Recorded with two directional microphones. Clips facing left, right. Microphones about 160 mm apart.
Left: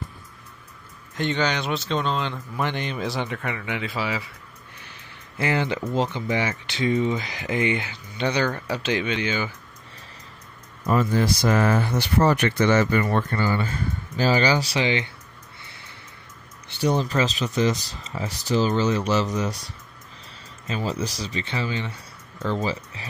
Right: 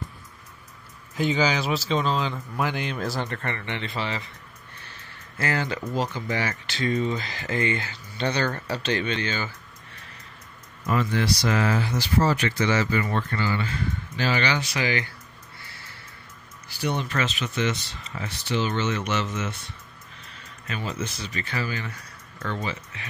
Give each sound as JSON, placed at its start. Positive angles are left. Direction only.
{"t": 1.1, "sound": "speech", "side_deg": -5}
{"t": 4.7, "sound": "a sound", "side_deg": 15}
{"t": 5.9, "sound": "speech", "side_deg": 20}
{"t": 10.9, "sound": "speech", "side_deg": 40}
{"t": 13.3, "sound": "speech", "side_deg": 45}
{"t": 15.6, "sound": "a sound", "side_deg": 20}
{"t": 16.6, "sound": "speech", "side_deg": 30}